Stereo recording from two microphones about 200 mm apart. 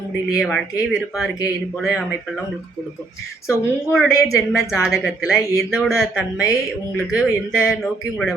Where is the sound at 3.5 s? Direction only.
Centre (ahead or behind).